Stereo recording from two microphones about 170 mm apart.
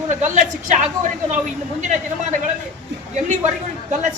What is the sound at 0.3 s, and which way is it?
A woman's voice, 45° right (ahead or behind).